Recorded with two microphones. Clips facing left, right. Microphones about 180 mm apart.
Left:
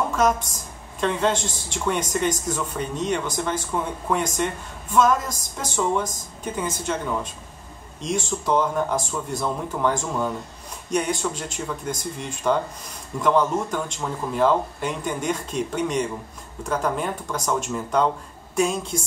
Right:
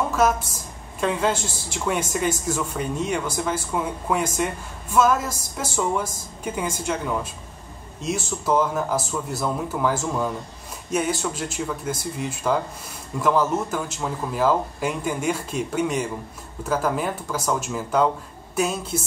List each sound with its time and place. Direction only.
0.1 s a woman's voice: 5° right (ahead or behind)
8.0 s speech: 5° right (ahead or behind)